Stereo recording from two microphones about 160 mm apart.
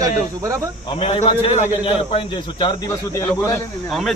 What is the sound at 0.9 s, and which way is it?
Speech, 35° left (ahead or behind).